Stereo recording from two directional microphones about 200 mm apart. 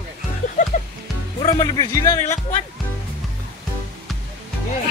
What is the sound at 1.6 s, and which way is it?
Speech, 20° left (ahead or behind).